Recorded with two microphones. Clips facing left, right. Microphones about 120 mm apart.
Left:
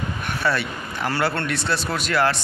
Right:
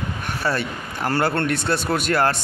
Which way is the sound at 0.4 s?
40° right (ahead or behind).